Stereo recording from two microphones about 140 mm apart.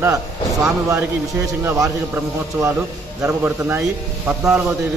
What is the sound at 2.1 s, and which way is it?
A man's voice, 15° right (ahead or behind).